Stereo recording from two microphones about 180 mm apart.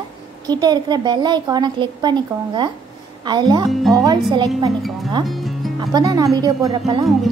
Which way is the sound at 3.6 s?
Centre (ahead or behind).